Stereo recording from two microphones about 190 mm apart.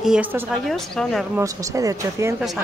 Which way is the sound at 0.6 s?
Centre (ahead or behind).